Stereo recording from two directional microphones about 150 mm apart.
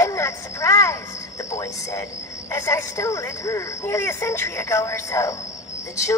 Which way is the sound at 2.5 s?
15° left (ahead or behind).